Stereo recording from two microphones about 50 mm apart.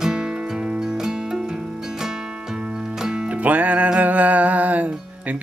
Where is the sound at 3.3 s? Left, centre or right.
Right.